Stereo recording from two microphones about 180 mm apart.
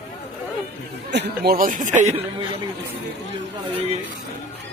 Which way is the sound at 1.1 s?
65° right (ahead or behind).